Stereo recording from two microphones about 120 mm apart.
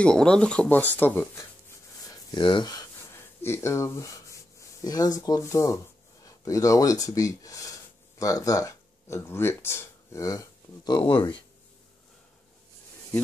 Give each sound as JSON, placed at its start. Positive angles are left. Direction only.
{"t": 0.0, "sound": "speech", "side_deg": 5}
{"t": 2.0, "sound": "a sound", "side_deg": 40}
{"t": 3.4, "sound": "speech", "side_deg": 20}